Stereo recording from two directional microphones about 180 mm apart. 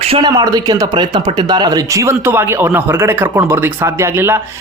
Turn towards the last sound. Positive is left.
turn(degrees=-15)  # may be behind; listen again after turning